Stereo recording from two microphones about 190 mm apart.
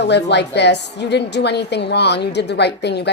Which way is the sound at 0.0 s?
60° left (ahead or behind).